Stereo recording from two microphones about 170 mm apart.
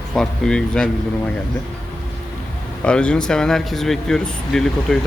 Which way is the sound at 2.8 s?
5° left (ahead or behind).